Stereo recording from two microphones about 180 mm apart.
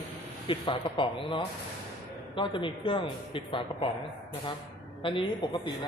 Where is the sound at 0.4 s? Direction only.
30° left (ahead or behind).